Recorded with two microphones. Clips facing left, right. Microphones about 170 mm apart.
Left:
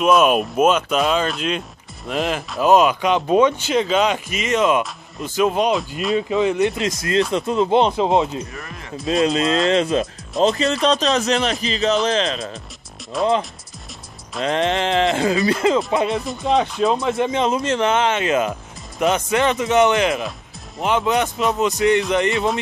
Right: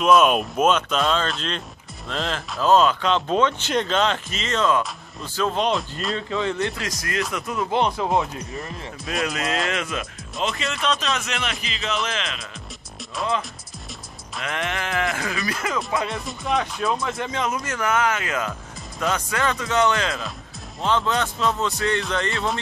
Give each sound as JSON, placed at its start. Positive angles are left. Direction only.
{"t": 0.0, "sound": "speech", "side_deg": 5}
{"t": 6.1, "sound": "speech", "side_deg": 15}
{"t": 13.1, "sound": "speech", "side_deg": 0}
{"t": 14.4, "sound": "speech", "side_deg": 30}